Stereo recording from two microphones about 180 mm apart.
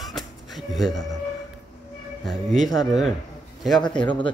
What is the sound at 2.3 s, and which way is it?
A man's voice, centre (ahead or behind).